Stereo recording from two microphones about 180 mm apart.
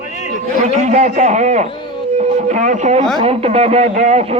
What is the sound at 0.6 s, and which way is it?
Speech, 40° right (ahead or behind).